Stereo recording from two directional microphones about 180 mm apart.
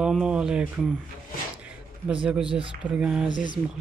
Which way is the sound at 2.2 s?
5° right (ahead or behind).